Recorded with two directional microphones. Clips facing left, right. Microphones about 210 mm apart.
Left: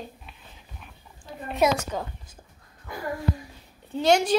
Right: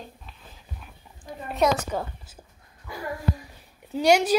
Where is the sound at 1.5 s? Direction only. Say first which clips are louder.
Even; 5° left (ahead or behind).